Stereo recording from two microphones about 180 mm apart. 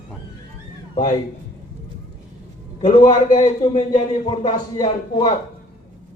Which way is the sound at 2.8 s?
25° left (ahead or behind).